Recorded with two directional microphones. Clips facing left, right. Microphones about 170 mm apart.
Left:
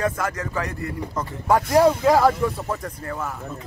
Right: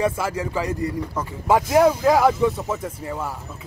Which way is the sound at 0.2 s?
10° right (ahead or behind).